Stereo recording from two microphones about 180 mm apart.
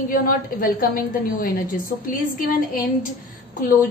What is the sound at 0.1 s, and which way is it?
A woman's voice, 50° left (ahead or behind).